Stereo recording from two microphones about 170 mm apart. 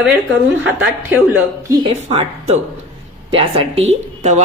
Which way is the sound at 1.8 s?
35° right (ahead or behind).